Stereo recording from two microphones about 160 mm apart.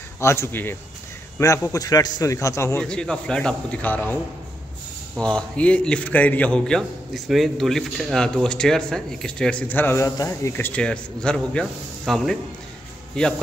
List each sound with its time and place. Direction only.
0.2 s a man's voice: 15° left (ahead or behind)
2.8 s a man's voice: 5° left (ahead or behind)
10.7 s a man's voice: 5° left (ahead or behind)